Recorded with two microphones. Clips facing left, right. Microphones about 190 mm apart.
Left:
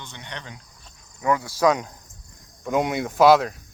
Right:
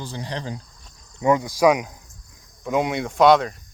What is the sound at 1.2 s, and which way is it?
Speech, 20° right (ahead or behind).